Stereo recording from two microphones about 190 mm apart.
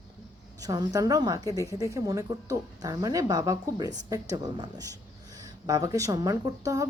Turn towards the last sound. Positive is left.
turn(degrees=-20)  # may be behind; listen again after turning